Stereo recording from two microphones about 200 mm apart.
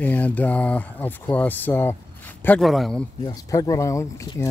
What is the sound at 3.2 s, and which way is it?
Speech, 15° left (ahead or behind).